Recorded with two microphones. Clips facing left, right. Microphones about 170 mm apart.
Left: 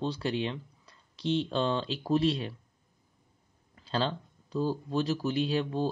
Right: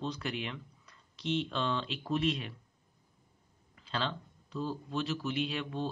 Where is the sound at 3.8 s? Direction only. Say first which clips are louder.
Left 5 dB; 35° left (ahead or behind).